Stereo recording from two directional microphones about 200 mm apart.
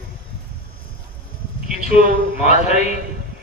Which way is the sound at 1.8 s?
35° left (ahead or behind).